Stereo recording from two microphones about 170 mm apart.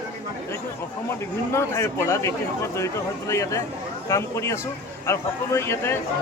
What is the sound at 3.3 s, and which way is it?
A man's voice, 20° left (ahead or behind).